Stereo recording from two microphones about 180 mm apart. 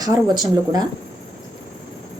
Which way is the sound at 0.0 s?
20° right (ahead or behind).